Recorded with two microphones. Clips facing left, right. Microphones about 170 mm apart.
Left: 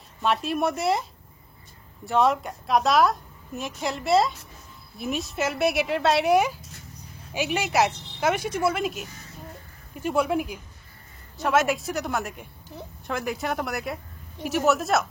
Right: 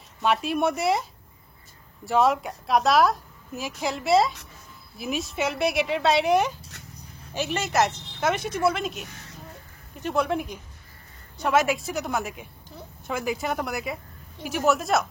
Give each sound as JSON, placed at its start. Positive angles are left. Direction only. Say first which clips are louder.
{"t": 0.2, "sound": "a woman's voice", "louder": "right 1 dB", "side_deg": 0}
{"t": 2.0, "sound": "a woman's voice", "louder": "even", "side_deg": 0}